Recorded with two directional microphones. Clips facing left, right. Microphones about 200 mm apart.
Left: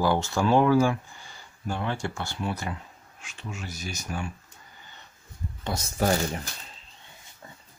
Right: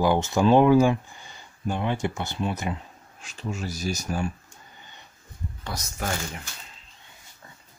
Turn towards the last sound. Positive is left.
turn(degrees=35)  # may be behind; listen again after turning